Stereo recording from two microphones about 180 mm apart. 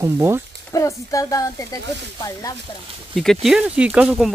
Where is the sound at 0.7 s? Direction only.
20° left (ahead or behind).